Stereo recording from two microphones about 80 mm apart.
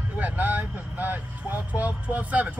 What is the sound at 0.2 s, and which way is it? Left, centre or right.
Speech, right.